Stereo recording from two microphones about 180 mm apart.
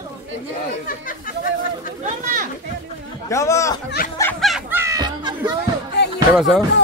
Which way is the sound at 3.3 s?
15° left (ahead or behind).